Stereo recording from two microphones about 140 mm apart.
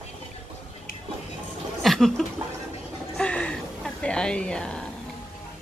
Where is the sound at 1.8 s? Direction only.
Centre (ahead or behind).